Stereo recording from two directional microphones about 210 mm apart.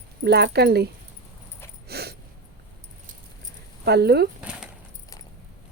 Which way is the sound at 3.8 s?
50° right (ahead or behind).